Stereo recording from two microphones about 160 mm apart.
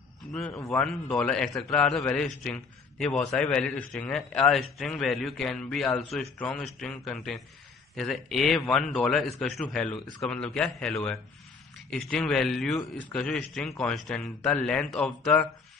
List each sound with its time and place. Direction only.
0.5 s a man's voice: 20° left (ahead or behind)
0.7 s a man's voice: 5° left (ahead or behind)